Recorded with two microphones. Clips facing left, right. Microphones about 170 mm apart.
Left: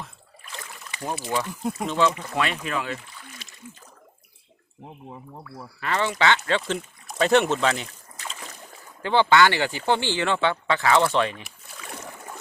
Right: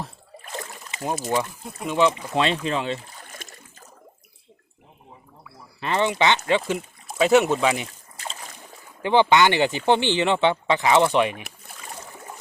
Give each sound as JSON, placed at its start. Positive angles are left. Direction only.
{"t": 0.0, "sound": "rowboat", "side_deg": -40}
{"t": 1.1, "sound": "speech", "side_deg": -45}
{"t": 1.9, "sound": "speech", "side_deg": -15}
{"t": 3.1, "sound": "rowboat", "side_deg": -45}
{"t": 5.8, "sound": "speech", "side_deg": -20}
{"t": 9.0, "sound": "speech", "side_deg": -15}